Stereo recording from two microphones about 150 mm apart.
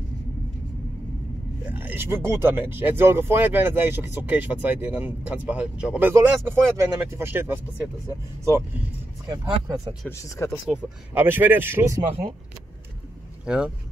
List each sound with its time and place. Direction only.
1.7 s speech: 10° right (ahead or behind)
9.3 s speech: 25° right (ahead or behind)
10.0 s speech: 20° left (ahead or behind)
10.7 s speech: 15° right (ahead or behind)